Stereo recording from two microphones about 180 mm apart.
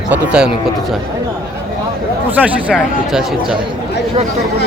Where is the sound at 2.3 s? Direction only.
10° right (ahead or behind).